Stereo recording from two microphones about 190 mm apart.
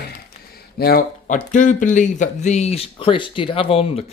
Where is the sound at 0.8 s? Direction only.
50° left (ahead or behind).